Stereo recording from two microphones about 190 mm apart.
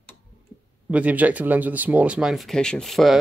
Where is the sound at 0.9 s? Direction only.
5° right (ahead or behind).